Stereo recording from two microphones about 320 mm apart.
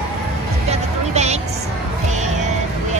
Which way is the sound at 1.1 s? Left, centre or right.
Right.